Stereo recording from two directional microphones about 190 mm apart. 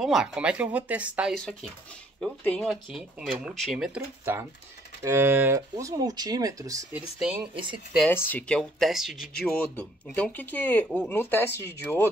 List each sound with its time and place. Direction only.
0.0 s speech: centre (ahead or behind); by 6.9 s 20° right (ahead or behind)
6.9 s speech: 5° right (ahead or behind)
7.5 s speech: 25° right (ahead or behind)
8.1 s speech: 10° left (ahead or behind)